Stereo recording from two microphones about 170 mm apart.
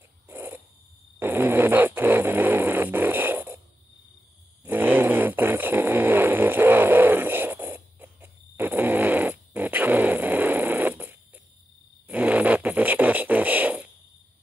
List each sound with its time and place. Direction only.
0.3 s owl: 10° right (ahead or behind)
1.2 s fart: 10° right (ahead or behind)
4.6 s fart: 10° right (ahead or behind)
12.1 s a sound: 10° right (ahead or behind)